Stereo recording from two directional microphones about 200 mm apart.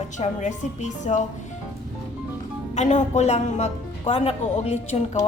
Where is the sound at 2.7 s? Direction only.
35° left (ahead or behind).